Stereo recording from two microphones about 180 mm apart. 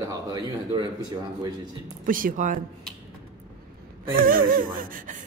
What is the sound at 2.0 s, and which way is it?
Speech, 50° right (ahead or behind).